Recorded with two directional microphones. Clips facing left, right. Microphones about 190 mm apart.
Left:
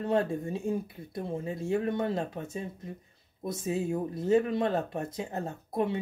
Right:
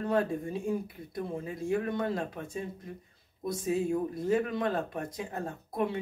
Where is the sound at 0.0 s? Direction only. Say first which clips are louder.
Left 1 dB; 25° left (ahead or behind).